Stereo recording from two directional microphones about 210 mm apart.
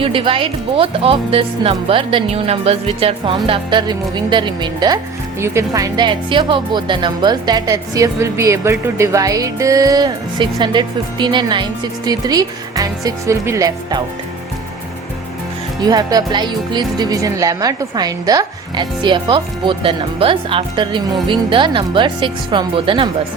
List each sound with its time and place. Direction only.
0.0 s speech: 25° right (ahead or behind)
15.8 s speech: 20° right (ahead or behind)